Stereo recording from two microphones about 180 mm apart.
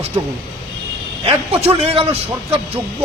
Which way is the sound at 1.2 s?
35° right (ahead or behind).